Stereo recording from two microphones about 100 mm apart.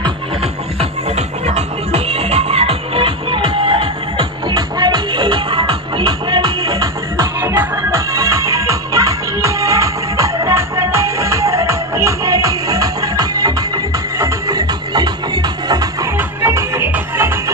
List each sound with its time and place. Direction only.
0.7 s music: 90° right; by 6.8 s 55° right (ahead or behind)
6.8 s music: 30° right (ahead or behind)
16.2 s music: 25° right (ahead or behind)